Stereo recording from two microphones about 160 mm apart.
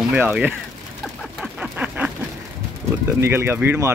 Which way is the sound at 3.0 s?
15° right (ahead or behind).